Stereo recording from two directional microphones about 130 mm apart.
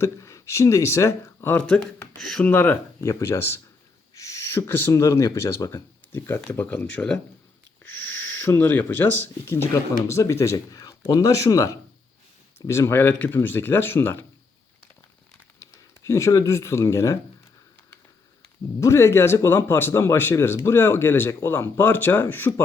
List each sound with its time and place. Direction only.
0.0 s speech: 25° left (ahead or behind)
1.6 s speech: 5° left (ahead or behind)
2.5 s speech: 15° left (ahead or behind)
7.9 s speech: 15° left (ahead or behind)
15.5 s speech: 20° left (ahead or behind)
18.8 s speech: 20° left (ahead or behind)